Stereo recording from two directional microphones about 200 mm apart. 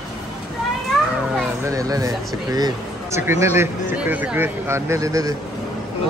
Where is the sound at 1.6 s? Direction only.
15° right (ahead or behind).